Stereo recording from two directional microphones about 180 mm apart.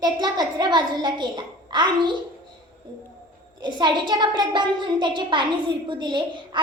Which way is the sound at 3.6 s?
25° right (ahead or behind).